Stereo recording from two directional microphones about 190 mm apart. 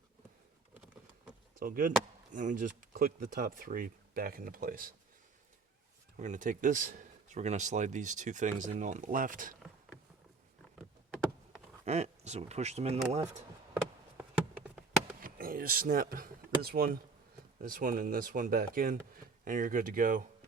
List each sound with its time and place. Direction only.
1.5 s speech: 45° right (ahead or behind)
6.1 s speech: 40° right (ahead or behind)
11.9 s speech: 35° right (ahead or behind)
14.2 s a sound: 5° right (ahead or behind)
15.2 s speech: 50° right (ahead or behind)